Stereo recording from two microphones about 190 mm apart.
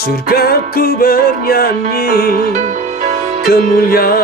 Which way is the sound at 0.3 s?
55° left (ahead or behind).